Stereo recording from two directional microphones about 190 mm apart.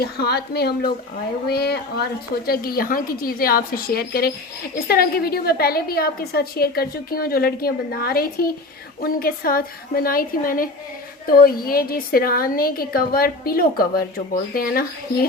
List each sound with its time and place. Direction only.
0.0 s a woman's voice: 55° left (ahead or behind)